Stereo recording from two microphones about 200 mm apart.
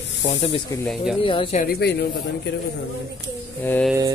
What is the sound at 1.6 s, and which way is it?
Speech, 55° left (ahead or behind).